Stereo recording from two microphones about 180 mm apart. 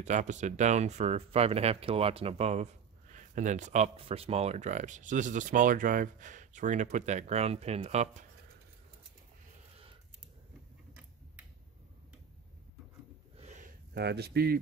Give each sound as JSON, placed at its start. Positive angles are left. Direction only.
{"t": 0.0, "sound": "speech", "side_deg": -40}
{"t": 13.4, "sound": "a sound", "side_deg": -40}
{"t": 13.9, "sound": "speech", "side_deg": -65}